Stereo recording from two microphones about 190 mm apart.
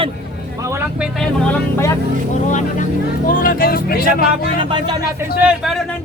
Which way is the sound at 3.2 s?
50° left (ahead or behind).